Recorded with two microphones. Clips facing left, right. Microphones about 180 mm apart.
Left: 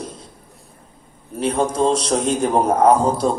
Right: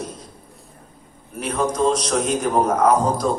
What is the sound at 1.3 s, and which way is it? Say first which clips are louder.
A man's voice: left 3 dB; 30° left (ahead or behind).